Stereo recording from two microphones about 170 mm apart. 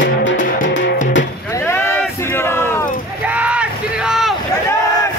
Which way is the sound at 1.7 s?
15° left (ahead or behind).